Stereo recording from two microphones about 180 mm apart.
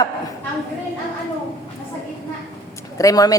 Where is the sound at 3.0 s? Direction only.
20° left (ahead or behind).